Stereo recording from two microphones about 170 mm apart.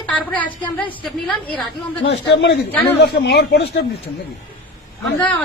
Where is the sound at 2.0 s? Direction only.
90° left.